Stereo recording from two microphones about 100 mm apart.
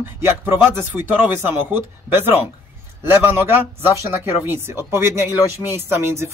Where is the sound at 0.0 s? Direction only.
25° right (ahead or behind).